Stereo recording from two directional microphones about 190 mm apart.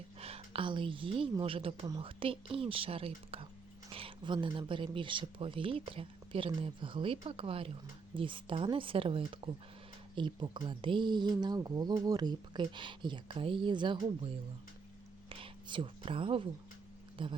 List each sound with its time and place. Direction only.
0.2 s speech: 30° right (ahead or behind)
15.3 s whispering: 25° right (ahead or behind)
17.2 s speech: 25° right (ahead or behind)